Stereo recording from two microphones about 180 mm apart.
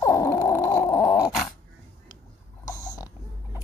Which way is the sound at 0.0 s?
20° left (ahead or behind).